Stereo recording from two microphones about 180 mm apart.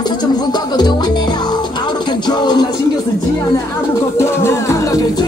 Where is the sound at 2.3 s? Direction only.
25° left (ahead or behind).